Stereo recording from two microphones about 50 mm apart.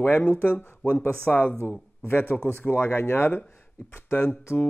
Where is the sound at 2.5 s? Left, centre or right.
Left.